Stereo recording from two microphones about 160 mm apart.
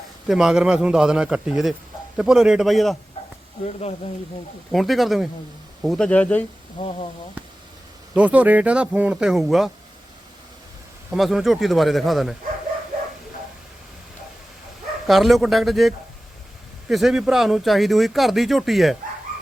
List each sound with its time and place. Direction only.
0.3 s speech: 5° right (ahead or behind)
4.7 s speech: centre (ahead or behind)
6.7 s speech: 40° left (ahead or behind)
8.1 s speech: 10° right (ahead or behind)
11.1 s speech: centre (ahead or behind)
15.0 s speech: centre (ahead or behind)